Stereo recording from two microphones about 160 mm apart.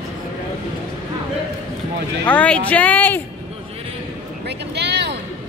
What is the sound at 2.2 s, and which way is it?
Speech, 10° left (ahead or behind).